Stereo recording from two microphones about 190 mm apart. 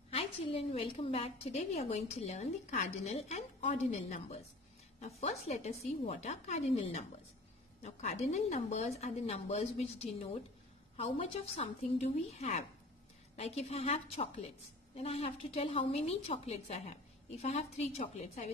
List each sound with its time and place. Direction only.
0.1 s a woman's voice: 30° left (ahead or behind)